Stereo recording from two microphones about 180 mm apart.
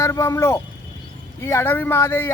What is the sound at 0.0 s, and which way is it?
Speech, 15° left (ahead or behind).